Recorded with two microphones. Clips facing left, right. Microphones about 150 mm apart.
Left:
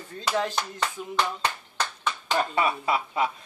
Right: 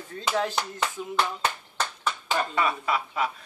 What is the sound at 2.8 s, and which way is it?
Speech, 25° left (ahead or behind).